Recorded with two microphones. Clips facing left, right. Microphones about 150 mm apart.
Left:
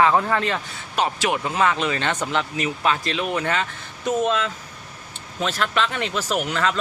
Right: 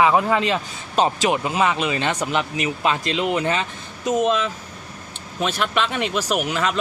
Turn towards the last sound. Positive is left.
turn(degrees=-15)  # may be behind; listen again after turning